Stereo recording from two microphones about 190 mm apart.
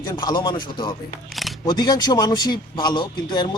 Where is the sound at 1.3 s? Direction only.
Centre (ahead or behind).